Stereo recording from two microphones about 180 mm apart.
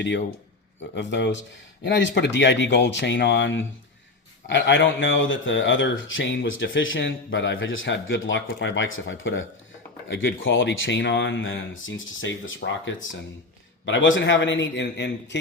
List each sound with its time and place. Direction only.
0.8 s speech: 85° left